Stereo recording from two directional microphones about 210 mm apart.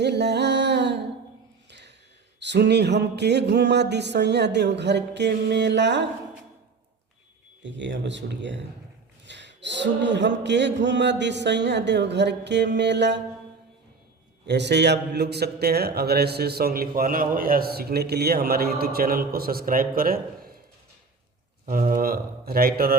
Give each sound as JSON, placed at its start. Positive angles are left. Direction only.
{"t": 0.0, "sound": "a sound", "side_deg": -55}
{"t": 2.4, "sound": "speech", "side_deg": -55}
{"t": 7.6, "sound": "speech", "side_deg": -60}
{"t": 14.4, "sound": "a man's voice", "side_deg": -55}
{"t": 21.7, "sound": "a man's voice", "side_deg": -40}